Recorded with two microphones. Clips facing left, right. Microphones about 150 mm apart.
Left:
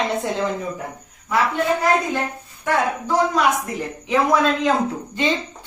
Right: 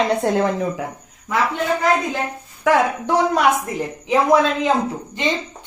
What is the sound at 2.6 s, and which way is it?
Speech, 85° right.